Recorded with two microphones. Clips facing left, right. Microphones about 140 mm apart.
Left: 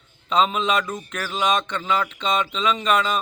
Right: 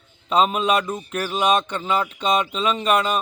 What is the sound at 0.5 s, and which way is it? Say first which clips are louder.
Speech: right 2 dB; 10° right (ahead or behind).